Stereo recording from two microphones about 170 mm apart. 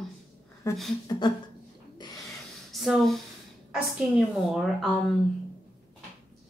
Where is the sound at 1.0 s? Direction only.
25° left (ahead or behind).